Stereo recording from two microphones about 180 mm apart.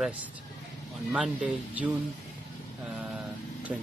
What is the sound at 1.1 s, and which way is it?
Speech, 5° right (ahead or behind).